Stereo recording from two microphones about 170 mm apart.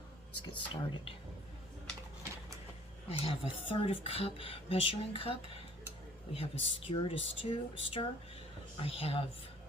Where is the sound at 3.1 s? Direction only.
35° left (ahead or behind).